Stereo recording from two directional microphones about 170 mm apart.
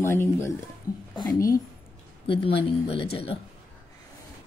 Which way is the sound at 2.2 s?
30° left (ahead or behind).